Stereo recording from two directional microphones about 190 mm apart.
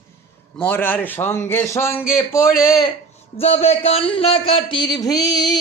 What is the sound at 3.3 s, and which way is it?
Speech, 30° left (ahead or behind).